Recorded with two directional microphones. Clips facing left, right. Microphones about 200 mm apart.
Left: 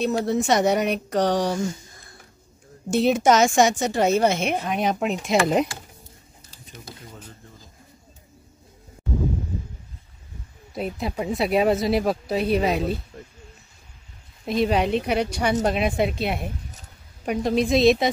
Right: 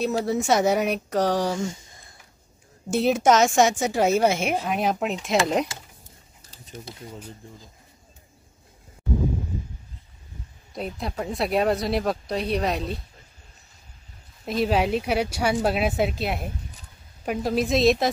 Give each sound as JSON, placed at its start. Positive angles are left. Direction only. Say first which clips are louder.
{"t": 0.0, "sound": "a woman's voice", "louder": "left 2 dB", "side_deg": -5}
{"t": 2.9, "sound": "a woman's voice", "louder": "left 1 dB", "side_deg": -5}
{"t": 7.1, "sound": "speech", "louder": "right 4 dB", "side_deg": -10}
{"t": 10.7, "sound": "a woman's voice", "louder": "left 3 dB", "side_deg": 5}
{"t": 13.1, "sound": "a sound", "louder": "left 13 dB", "side_deg": 55}
{"t": 14.4, "sound": "a woman's voice", "louder": "left 1 dB", "side_deg": 0}